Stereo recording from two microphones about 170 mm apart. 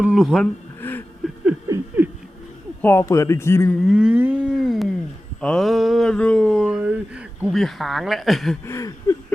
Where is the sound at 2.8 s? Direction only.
15° left (ahead or behind).